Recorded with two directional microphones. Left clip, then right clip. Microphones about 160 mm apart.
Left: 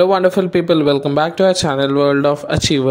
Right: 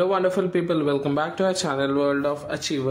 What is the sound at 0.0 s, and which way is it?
Speech, 40° left (ahead or behind).